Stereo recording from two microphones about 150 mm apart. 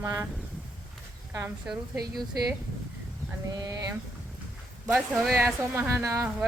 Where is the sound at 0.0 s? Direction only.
20° right (ahead or behind).